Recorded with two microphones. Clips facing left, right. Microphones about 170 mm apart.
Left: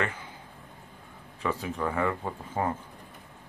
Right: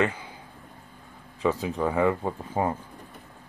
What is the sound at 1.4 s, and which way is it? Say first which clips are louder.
Speech: right 5 dB; 20° right (ahead or behind).